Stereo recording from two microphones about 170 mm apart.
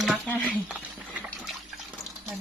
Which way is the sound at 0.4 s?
5° right (ahead or behind).